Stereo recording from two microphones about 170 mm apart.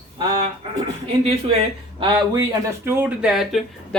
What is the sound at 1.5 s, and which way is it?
Speech, 30° right (ahead or behind).